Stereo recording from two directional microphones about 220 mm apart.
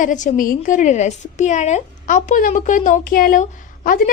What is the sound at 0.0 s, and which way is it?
A woman's voice, 35° left (ahead or behind).